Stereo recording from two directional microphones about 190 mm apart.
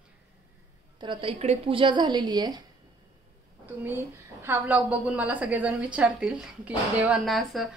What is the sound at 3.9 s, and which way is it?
A woman's voice, 10° right (ahead or behind).